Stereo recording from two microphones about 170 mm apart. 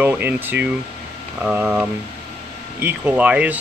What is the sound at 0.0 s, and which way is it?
Speech, 10° right (ahead or behind).